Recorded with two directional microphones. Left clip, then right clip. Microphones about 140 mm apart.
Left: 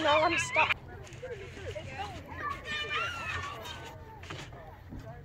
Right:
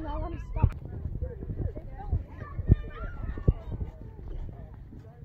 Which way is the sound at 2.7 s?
40° left (ahead or behind).